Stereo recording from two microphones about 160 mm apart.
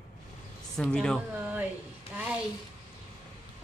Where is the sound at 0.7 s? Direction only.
5° left (ahead or behind).